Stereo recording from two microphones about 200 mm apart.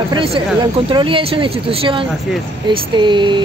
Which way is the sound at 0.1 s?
25° right (ahead or behind).